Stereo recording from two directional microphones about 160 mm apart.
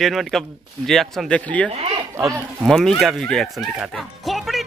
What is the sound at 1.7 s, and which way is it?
Speech, 40° right (ahead or behind).